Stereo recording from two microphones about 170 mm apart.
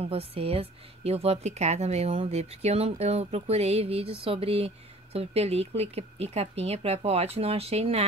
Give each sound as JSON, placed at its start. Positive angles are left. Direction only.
{"t": 0.0, "sound": "a woman's voice", "side_deg": -35}